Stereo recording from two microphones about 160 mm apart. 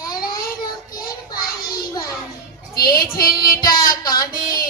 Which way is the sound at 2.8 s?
70° left (ahead or behind).